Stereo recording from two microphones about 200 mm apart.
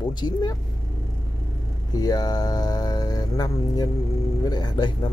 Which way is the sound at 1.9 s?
20° left (ahead or behind).